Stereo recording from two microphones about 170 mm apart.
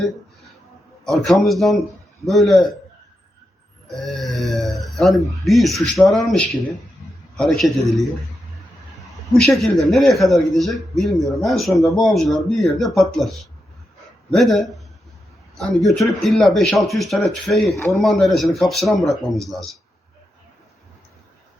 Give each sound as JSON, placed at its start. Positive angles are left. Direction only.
{"t": 1.0, "sound": "speech", "side_deg": 0}
{"t": 3.8, "sound": "speech", "side_deg": 0}
{"t": 9.0, "sound": "speech", "side_deg": 0}